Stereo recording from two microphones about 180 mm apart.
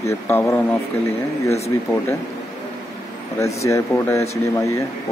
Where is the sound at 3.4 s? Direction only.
15° left (ahead or behind).